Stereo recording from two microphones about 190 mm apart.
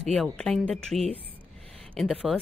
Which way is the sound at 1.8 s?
Centre (ahead or behind).